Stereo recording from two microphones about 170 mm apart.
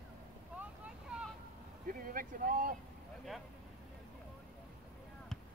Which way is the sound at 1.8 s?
55° right (ahead or behind).